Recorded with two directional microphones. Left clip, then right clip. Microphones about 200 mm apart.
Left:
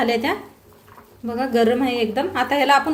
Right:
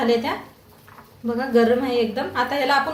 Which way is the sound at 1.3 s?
40° left (ahead or behind).